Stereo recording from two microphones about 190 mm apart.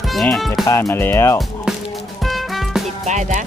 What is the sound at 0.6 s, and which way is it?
Speech, 15° left (ahead or behind).